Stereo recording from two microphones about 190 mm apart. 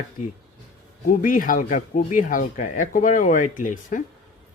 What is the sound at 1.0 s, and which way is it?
Speech, 45° left (ahead or behind).